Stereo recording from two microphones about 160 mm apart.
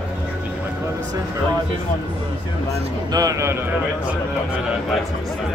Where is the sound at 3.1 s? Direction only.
20° right (ahead or behind).